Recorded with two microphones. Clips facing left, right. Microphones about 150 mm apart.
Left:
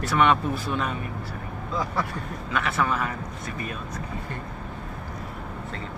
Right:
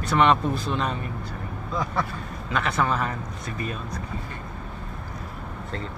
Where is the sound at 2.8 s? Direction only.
30° right (ahead or behind).